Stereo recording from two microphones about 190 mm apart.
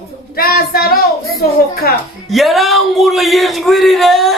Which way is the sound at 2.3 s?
Centre (ahead or behind).